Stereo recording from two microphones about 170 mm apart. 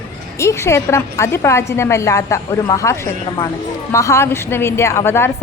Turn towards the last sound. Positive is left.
turn(degrees=15)  # may be behind; listen again after turning